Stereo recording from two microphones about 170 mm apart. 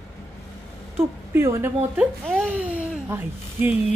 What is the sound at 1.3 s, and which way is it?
A woman's voice, 15° right (ahead or behind).